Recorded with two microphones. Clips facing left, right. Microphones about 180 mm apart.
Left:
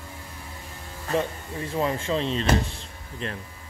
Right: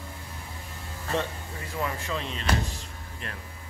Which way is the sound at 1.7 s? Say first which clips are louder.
Left 6 dB; 25° left (ahead or behind).